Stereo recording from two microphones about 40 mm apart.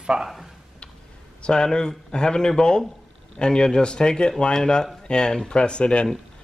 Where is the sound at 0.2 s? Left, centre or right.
Centre.